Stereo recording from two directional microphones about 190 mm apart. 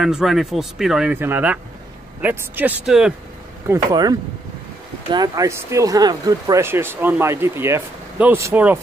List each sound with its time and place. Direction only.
0.0 s speech: centre (ahead or behind)
3.6 s speech: 20° right (ahead or behind)